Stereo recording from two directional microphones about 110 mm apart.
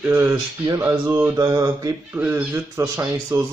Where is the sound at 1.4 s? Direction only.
35° right (ahead or behind).